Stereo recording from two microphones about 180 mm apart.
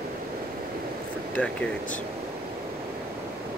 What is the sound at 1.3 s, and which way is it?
Speech, 5° left (ahead or behind).